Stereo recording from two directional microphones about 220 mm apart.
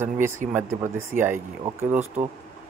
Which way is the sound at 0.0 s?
10° right (ahead or behind).